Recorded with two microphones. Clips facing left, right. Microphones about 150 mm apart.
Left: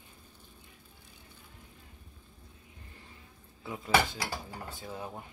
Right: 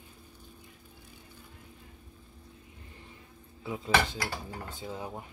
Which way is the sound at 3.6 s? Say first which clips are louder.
Even; 20° right (ahead or behind).